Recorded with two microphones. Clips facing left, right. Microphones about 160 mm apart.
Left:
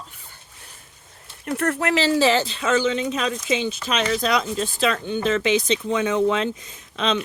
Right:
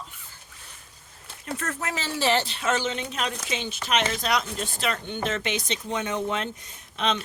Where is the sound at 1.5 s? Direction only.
60° left (ahead or behind); by 2.1 s 80° left.